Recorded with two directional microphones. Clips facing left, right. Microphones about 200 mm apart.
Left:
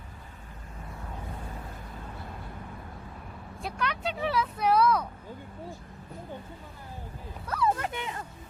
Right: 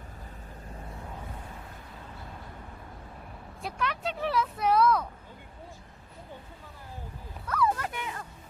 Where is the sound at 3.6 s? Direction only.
Centre (ahead or behind).